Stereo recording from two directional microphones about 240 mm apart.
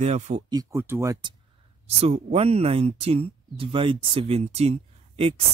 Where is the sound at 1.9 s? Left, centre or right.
Right.